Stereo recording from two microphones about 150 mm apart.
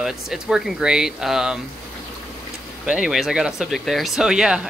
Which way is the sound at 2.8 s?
5° right (ahead or behind).